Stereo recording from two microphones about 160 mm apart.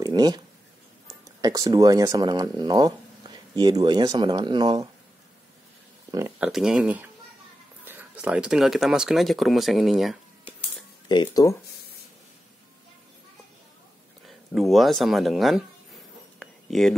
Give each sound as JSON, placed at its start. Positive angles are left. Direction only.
{"t": 0.0, "sound": "a sound", "side_deg": -25}
{"t": 1.0, "sound": "speech", "side_deg": -20}
{"t": 6.4, "sound": "speech", "side_deg": -5}
{"t": 11.1, "sound": "speech", "side_deg": 25}
{"t": 14.2, "sound": "speech", "side_deg": 0}
{"t": 16.3, "sound": "a sound", "side_deg": 0}